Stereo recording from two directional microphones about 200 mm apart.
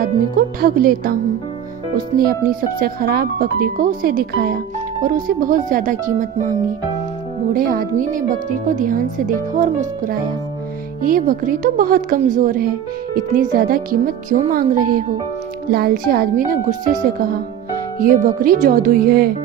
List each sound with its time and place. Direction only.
0.0 s speech: 45° right (ahead or behind)
2.8 s speech: 50° right (ahead or behind)
7.5 s speech: 45° right (ahead or behind)